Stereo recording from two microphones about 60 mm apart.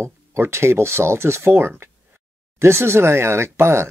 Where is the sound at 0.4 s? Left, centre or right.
Right.